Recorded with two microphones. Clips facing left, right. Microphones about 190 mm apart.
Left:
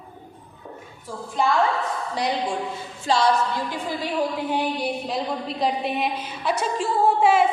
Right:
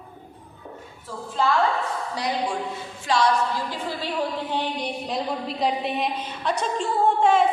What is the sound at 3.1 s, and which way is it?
Speech, 30° left (ahead or behind).